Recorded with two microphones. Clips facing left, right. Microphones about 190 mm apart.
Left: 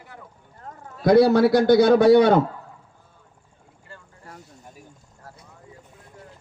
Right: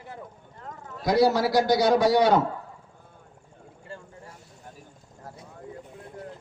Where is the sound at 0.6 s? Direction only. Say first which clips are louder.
Left 8 dB; 55° left (ahead or behind).